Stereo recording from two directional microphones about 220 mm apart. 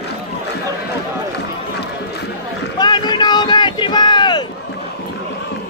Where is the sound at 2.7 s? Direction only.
20° left (ahead or behind).